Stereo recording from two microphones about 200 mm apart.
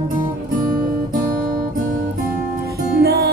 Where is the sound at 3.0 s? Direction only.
50° right (ahead or behind).